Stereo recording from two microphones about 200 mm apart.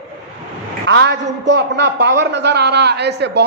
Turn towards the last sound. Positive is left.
turn(degrees=-55)  # may be behind; listen again after turning